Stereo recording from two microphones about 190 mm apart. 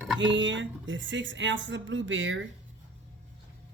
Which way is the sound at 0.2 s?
75° right (ahead or behind).